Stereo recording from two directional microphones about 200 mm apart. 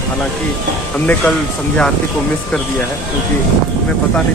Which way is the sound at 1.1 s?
5° left (ahead or behind).